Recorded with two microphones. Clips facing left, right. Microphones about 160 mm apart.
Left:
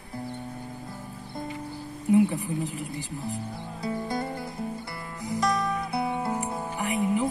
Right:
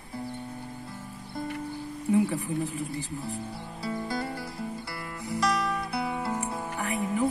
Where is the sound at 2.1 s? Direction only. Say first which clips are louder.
Left 3 dB; 15° left (ahead or behind).